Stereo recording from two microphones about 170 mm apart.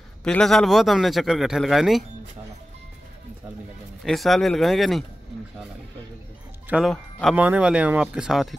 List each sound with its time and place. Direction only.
0.2 s a man's voice: 5° left (ahead or behind)
4.0 s a man's voice: centre (ahead or behind)
6.7 s speech: centre (ahead or behind)
7.3 s speech: 10° right (ahead or behind)